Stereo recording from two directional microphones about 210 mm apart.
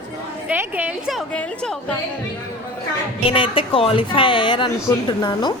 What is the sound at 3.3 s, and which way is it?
A woman's voice, 25° left (ahead or behind).